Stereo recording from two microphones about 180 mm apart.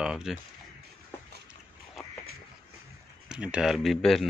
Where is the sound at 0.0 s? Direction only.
5° right (ahead or behind).